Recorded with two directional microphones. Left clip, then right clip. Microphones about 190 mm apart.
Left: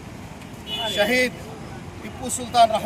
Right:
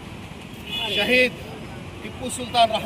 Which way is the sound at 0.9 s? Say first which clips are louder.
Right 2 dB; 15° left (ahead or behind).